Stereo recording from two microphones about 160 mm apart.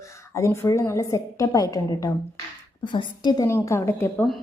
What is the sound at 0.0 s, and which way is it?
A woman's voice, 20° left (ahead or behind).